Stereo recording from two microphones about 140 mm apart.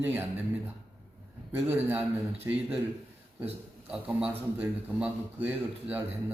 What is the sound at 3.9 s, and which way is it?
A man's voice, 10° right (ahead or behind).